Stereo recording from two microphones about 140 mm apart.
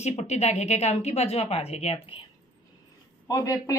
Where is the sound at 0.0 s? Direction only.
50° left (ahead or behind).